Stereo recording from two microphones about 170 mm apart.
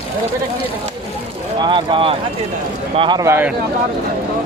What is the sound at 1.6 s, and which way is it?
Speech, 30° right (ahead or behind).